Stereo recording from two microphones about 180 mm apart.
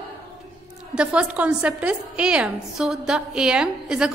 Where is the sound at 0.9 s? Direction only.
5° right (ahead or behind).